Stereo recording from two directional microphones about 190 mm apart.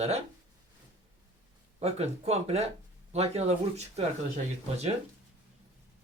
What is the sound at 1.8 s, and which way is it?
Speech, 35° right (ahead or behind).